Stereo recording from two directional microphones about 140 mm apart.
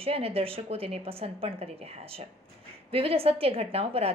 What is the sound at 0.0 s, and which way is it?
Speech, 45° right (ahead or behind).